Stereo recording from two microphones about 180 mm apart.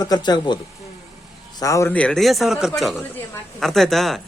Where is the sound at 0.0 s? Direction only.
25° left (ahead or behind).